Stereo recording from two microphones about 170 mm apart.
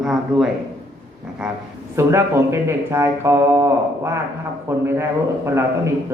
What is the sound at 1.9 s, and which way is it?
Speech, 15° right (ahead or behind).